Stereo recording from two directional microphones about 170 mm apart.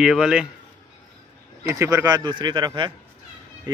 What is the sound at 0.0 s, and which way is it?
Speech, 5° right (ahead or behind).